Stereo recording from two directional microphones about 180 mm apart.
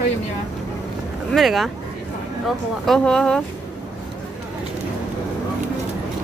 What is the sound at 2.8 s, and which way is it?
Speech, 5° left (ahead or behind).